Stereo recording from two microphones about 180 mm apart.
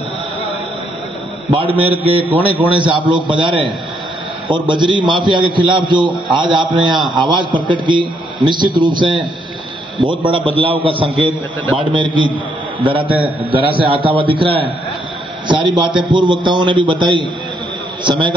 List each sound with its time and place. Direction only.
1.5 s a man's voice: 30° right (ahead or behind)